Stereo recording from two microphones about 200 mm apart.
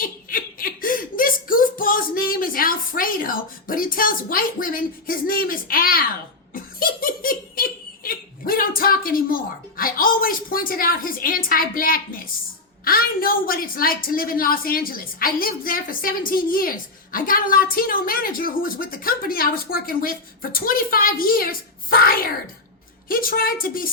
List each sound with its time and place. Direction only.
0.0 s a sound: 45° left (ahead or behind)
6.5 s giggle: 45° left (ahead or behind)
12.8 s a woman's voice: 45° left (ahead or behind)